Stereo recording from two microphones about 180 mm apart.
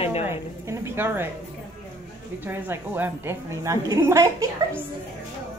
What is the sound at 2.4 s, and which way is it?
A woman's voice, 10° right (ahead or behind).